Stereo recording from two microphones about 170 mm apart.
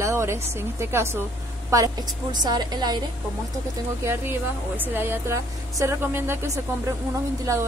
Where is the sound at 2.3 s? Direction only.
25° right (ahead or behind).